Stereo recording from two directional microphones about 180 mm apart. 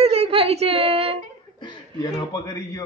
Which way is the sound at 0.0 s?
35° right (ahead or behind).